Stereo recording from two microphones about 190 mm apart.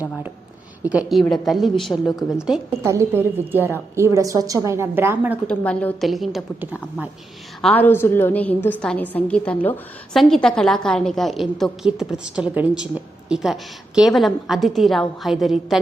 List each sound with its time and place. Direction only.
0.8 s a woman's voice: 5° right (ahead or behind)
2.8 s a woman's voice: 15° right (ahead or behind)
5.5 s a woman's voice: 5° left (ahead or behind)
7.6 s a woman's voice: 10° left (ahead or behind)